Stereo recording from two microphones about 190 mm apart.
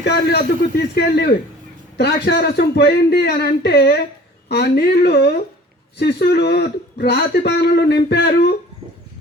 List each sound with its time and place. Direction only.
0.0 s a man's voice: 60° left (ahead or behind)